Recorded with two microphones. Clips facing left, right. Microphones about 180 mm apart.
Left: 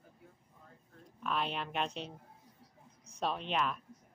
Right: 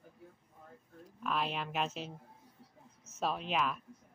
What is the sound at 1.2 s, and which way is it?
Speech, centre (ahead or behind).